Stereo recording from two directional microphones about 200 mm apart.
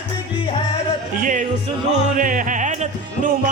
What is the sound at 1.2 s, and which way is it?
Music, 40° right (ahead or behind).